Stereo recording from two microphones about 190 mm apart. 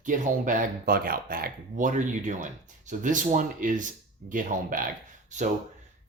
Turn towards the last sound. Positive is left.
turn(degrees=-40)  # may be behind; listen again after turning